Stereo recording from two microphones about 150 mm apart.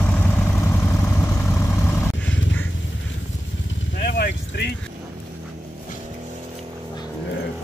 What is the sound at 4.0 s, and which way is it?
Vehicle, 90° left.